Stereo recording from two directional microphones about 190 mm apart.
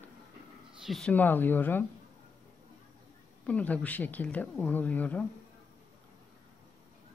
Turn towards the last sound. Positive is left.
turn(degrees=5)  # may be behind; listen again after turning